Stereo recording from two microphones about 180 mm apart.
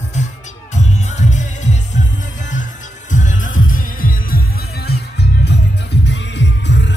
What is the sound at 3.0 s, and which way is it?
Music, 45° left (ahead or behind).